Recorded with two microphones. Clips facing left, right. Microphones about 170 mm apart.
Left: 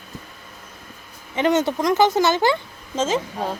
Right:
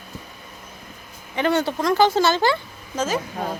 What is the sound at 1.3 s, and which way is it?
Speech, 20° left (ahead or behind).